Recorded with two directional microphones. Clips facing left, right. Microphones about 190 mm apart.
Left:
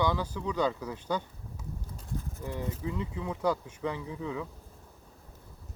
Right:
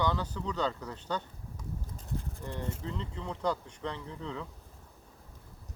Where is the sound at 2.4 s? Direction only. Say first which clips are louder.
Left 5 dB; 10° left (ahead or behind).